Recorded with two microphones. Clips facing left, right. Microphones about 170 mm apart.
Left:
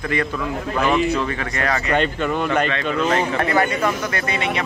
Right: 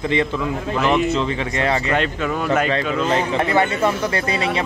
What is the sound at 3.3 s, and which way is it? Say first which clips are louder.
Speech: right 1 dB; 20° right (ahead or behind).